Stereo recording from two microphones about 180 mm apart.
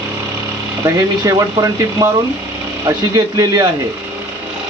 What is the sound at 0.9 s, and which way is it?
Speech, 20° right (ahead or behind).